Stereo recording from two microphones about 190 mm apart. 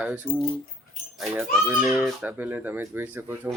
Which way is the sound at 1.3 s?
10° right (ahead or behind).